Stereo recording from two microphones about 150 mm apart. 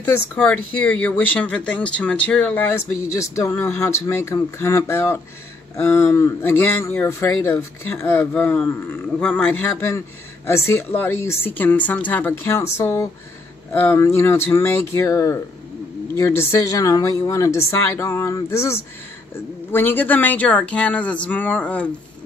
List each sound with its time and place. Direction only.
0.0 s a man's voice: 10° left (ahead or behind)